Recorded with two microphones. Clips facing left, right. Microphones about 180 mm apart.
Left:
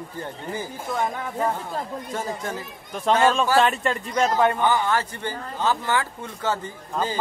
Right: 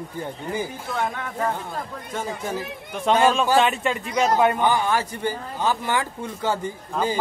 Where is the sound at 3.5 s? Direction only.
Centre (ahead or behind).